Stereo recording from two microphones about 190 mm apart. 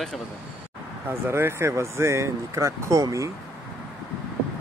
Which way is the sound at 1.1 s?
15° right (ahead or behind).